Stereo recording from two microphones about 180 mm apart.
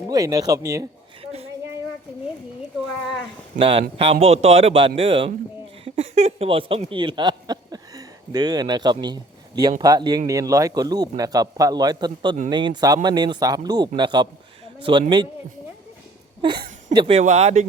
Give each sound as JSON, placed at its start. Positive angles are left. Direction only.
{"t": 0.1, "sound": "speech", "side_deg": -20}
{"t": 1.2, "sound": "a sound", "side_deg": -35}
{"t": 3.6, "sound": "speech", "side_deg": -30}
{"t": 16.9, "sound": "speech", "side_deg": -30}